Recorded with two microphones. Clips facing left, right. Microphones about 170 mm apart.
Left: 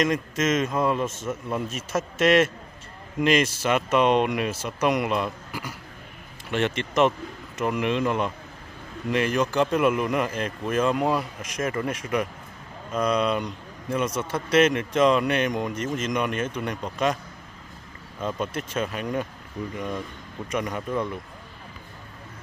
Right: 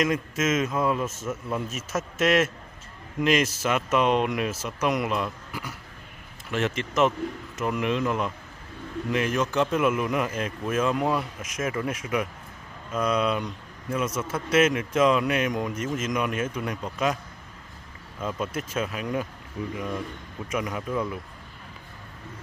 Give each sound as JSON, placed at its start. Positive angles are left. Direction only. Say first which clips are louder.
{"t": 0.0, "sound": "a man's voice", "louder": "left 1 dB", "side_deg": -5}
{"t": 18.2, "sound": "a man's voice", "louder": "left 1 dB", "side_deg": -5}
{"t": 20.4, "sound": "a man's voice", "louder": "left 1 dB", "side_deg": -5}